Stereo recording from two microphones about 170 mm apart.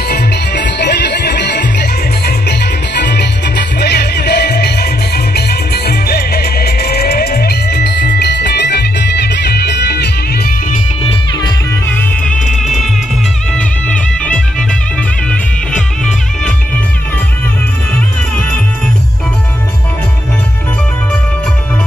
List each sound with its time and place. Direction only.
0.1 s music: 75° left (ahead or behind)
3.5 s music: 70° left (ahead or behind)
12.4 s music: centre (ahead or behind)